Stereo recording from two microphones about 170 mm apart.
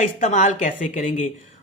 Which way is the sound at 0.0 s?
45° left (ahead or behind).